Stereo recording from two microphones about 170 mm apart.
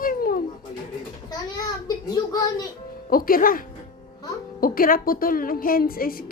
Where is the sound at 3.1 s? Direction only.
55° left (ahead or behind).